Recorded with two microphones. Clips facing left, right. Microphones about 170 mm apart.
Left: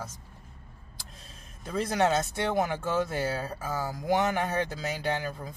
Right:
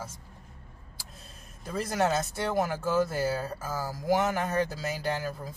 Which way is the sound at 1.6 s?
Centre (ahead or behind).